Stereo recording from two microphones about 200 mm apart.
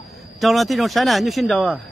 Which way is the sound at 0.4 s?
Centre (ahead or behind).